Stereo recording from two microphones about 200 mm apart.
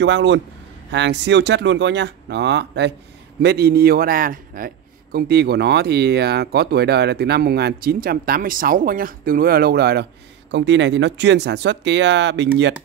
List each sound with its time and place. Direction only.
0.0 s a man's voice: 65° right (ahead or behind)